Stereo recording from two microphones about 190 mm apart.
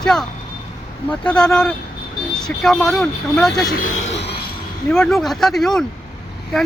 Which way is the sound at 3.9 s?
75° left (ahead or behind).